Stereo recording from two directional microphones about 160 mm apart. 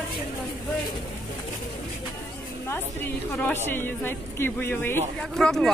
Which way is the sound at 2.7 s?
10° left (ahead or behind).